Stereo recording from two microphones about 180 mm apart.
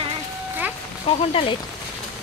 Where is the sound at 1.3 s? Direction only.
30° left (ahead or behind).